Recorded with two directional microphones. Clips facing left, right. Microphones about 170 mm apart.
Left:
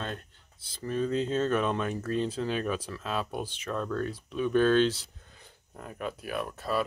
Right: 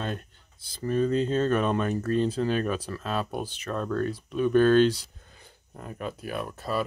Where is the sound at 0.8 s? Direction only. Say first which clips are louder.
Right 4 dB; centre (ahead or behind).